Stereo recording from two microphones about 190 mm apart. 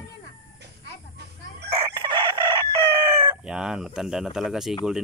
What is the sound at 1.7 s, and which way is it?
Chicken, 25° right (ahead or behind).